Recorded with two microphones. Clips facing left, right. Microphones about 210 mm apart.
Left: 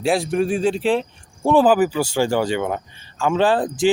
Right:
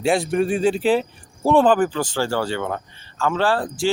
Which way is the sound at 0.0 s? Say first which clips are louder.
Even; centre (ahead or behind).